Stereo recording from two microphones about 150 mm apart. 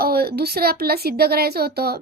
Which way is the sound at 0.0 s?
90° right.